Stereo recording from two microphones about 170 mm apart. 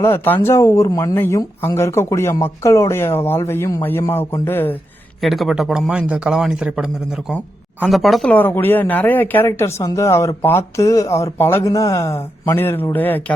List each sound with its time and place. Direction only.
0.0 s speech: 15° left (ahead or behind)
5.2 s a man's voice: centre (ahead or behind)